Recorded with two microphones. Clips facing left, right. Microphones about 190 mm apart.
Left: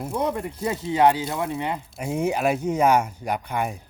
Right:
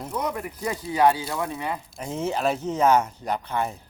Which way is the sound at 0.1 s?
30° left (ahead or behind).